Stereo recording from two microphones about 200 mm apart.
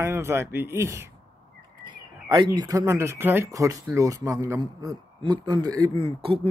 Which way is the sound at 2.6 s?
15° right (ahead or behind).